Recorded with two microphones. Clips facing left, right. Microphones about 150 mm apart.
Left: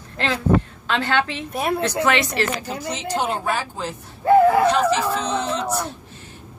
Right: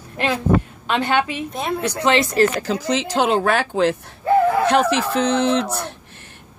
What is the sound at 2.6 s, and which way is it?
Speech, 90° right.